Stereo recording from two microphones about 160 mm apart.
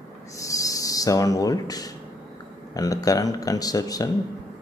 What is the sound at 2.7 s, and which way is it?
Speech, 20° left (ahead or behind).